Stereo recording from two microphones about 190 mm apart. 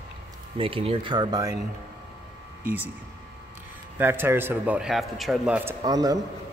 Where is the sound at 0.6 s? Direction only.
30° right (ahead or behind).